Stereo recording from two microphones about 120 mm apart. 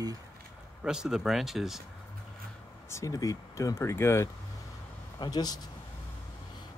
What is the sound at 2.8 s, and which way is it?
Speech, 25° left (ahead or behind).